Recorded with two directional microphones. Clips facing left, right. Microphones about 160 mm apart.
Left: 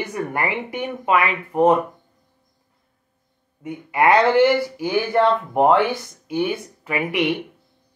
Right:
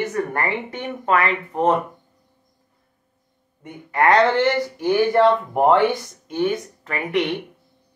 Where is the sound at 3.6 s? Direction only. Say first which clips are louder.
Left 1 dB; 10° left (ahead or behind).